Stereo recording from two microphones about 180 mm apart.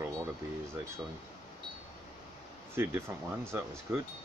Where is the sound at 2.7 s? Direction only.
15° right (ahead or behind).